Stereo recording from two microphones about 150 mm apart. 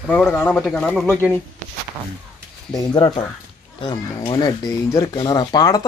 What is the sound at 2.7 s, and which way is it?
Speech, 30° left (ahead or behind).